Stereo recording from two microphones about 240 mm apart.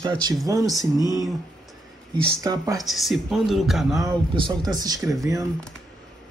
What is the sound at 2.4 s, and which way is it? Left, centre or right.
Speech, centre.